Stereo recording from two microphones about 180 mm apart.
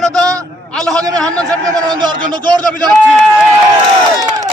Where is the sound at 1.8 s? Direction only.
25° right (ahead or behind).